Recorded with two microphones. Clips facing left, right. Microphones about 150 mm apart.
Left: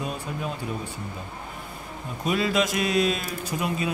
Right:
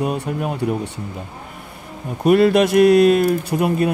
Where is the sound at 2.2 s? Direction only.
60° right (ahead or behind).